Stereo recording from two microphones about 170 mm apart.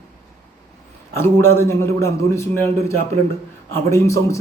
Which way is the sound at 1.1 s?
15° left (ahead or behind).